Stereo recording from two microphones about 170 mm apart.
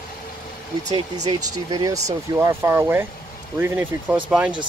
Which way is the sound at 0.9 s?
25° right (ahead or behind).